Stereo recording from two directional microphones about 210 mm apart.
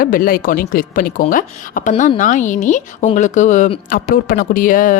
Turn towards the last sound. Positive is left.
turn(degrees=40)  # may be behind; listen again after turning